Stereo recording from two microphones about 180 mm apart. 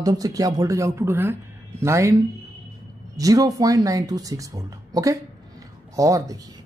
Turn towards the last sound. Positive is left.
turn(degrees=-20)  # may be behind; listen again after turning